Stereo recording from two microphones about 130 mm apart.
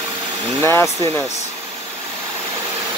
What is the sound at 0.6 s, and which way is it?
Speech, 15° left (ahead or behind).